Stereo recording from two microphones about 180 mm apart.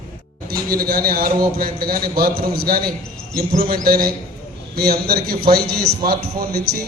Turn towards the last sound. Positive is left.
turn(degrees=-60)  # may be behind; listen again after turning